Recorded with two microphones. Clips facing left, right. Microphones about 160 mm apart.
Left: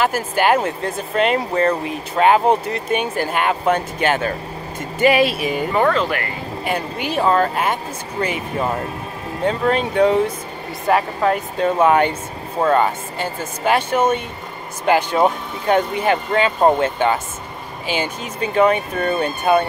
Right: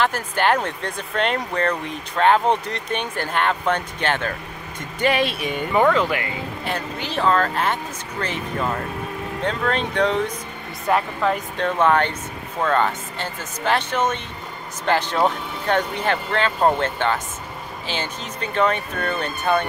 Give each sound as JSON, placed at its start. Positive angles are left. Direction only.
{"t": 0.0, "sound": "speech", "side_deg": 10}
{"t": 5.8, "sound": "speech", "side_deg": -15}
{"t": 6.6, "sound": "speech", "side_deg": 10}
{"t": 11.8, "sound": "speech", "side_deg": 10}